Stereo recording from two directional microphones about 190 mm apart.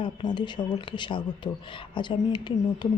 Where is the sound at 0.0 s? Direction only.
25° left (ahead or behind).